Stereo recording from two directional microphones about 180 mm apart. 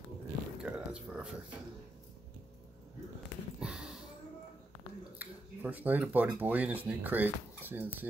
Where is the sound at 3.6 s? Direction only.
Centre (ahead or behind).